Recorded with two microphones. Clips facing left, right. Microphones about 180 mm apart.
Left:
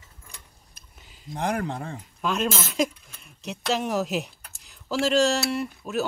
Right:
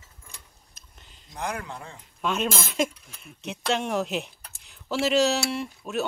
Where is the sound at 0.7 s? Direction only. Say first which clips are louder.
Left 1 dB; 5° left (ahead or behind).